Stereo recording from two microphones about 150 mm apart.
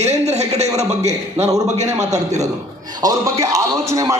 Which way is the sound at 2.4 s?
25° right (ahead or behind).